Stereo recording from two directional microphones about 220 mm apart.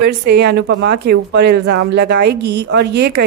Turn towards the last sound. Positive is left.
turn(degrees=-50)  # may be behind; listen again after turning